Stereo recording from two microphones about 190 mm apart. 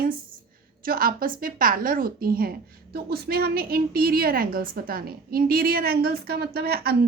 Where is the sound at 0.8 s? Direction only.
50° right (ahead or behind).